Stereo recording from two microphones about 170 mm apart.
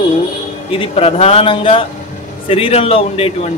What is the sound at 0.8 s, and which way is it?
A man's voice, 35° left (ahead or behind).